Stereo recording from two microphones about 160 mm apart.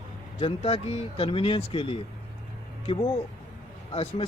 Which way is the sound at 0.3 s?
35° left (ahead or behind).